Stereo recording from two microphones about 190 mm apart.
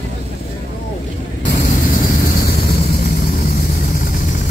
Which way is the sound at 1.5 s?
50° left (ahead or behind).